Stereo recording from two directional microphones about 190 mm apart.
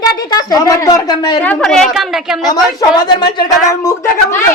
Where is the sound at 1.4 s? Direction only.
5° left (ahead or behind).